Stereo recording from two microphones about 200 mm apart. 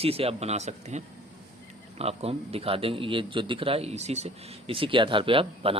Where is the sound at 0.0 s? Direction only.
30° right (ahead or behind).